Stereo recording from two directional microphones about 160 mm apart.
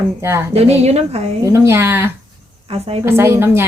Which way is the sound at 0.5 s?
40° right (ahead or behind).